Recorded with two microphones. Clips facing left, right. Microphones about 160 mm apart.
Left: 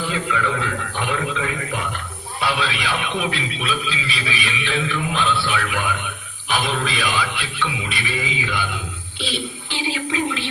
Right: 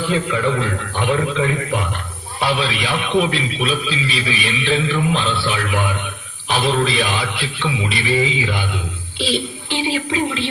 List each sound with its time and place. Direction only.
0.1 s a man's voice: 30° right (ahead or behind)
9.7 s speech: 30° right (ahead or behind)